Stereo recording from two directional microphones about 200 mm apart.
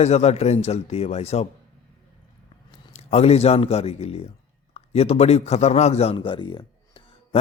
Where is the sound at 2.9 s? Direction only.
30° left (ahead or behind).